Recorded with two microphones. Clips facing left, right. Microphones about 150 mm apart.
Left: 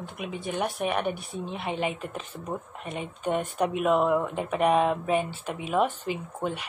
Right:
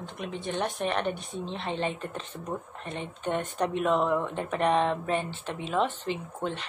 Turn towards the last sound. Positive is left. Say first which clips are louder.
# left 1 dB
turn(degrees=10)  # may be behind; listen again after turning